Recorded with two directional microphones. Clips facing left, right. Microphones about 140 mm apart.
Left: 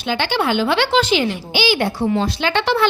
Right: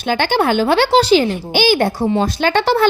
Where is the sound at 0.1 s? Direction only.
45° right (ahead or behind).